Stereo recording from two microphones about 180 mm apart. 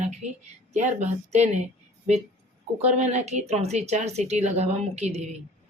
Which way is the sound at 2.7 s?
40° right (ahead or behind).